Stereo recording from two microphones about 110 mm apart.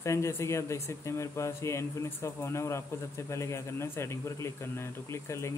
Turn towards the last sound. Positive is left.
turn(degrees=25)  # may be behind; listen again after turning